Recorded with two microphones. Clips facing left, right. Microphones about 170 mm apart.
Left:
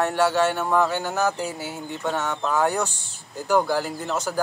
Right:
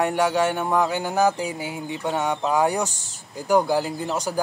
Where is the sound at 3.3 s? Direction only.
10° right (ahead or behind).